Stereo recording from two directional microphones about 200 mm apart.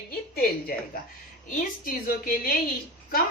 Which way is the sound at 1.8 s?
45° left (ahead or behind).